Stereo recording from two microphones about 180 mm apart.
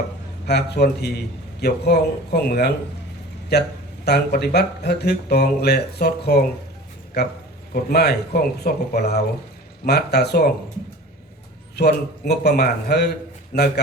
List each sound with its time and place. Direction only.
0.4 s speech: 65° left (ahead or behind)
11.8 s speech: 65° left (ahead or behind)